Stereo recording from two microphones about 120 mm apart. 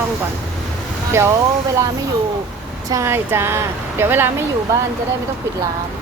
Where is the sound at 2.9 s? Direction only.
25° right (ahead or behind).